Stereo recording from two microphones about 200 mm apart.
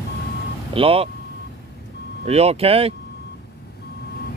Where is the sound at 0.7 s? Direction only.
30° right (ahead or behind).